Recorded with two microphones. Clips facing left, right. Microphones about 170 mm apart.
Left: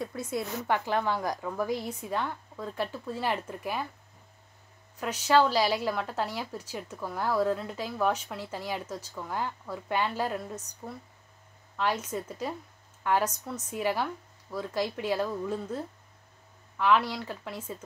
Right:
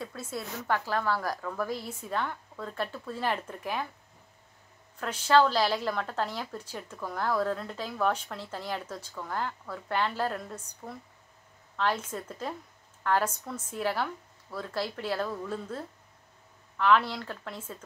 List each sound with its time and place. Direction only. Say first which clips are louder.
0.0 s a woman's voice: left 4 dB; 20° left (ahead or behind)
4.9 s a woman's voice: even; 10° left (ahead or behind)